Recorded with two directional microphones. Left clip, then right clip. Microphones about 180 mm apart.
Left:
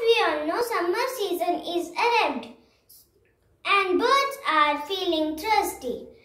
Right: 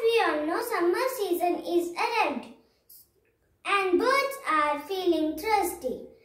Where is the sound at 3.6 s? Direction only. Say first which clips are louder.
Left 3 dB; 15° right (ahead or behind).